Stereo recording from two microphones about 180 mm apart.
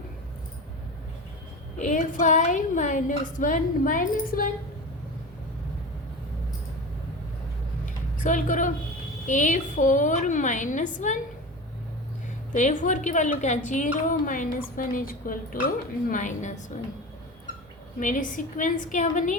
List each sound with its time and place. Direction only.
1.8 s a woman's voice: 45° left (ahead or behind)
8.2 s a woman's voice: 45° left (ahead or behind)
12.5 s a woman's voice: 45° left (ahead or behind)
18.0 s a woman's voice: 45° left (ahead or behind)